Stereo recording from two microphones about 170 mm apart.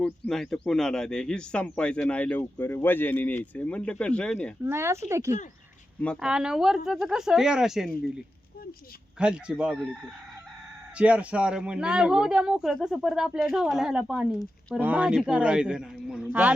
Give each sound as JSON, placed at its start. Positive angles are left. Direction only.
{"t": 0.0, "sound": "speech", "side_deg": 5}
{"t": 4.6, "sound": "speech", "side_deg": -15}
{"t": 6.0, "sound": "speech", "side_deg": 0}
{"t": 9.1, "sound": "speech", "side_deg": -5}